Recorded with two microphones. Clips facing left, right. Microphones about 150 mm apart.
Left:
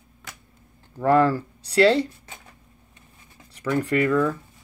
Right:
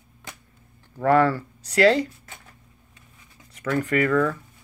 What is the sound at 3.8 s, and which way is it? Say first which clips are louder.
Speech: even; 30° left (ahead or behind).